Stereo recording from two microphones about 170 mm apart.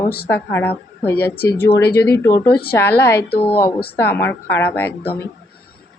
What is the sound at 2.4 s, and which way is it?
Speech, 65° left (ahead or behind).